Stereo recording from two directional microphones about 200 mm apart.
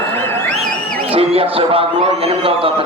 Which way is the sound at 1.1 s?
30° right (ahead or behind).